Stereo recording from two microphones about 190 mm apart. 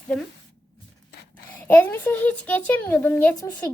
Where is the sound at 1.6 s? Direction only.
10° left (ahead or behind).